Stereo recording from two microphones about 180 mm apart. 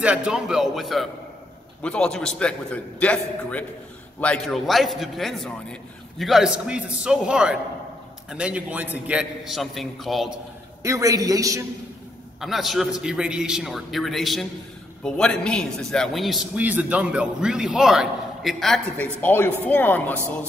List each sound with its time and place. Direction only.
0.0 s a man's voice: 5° right (ahead or behind)
10.8 s a man's voice: 15° right (ahead or behind)
12.4 s a man's voice: centre (ahead or behind)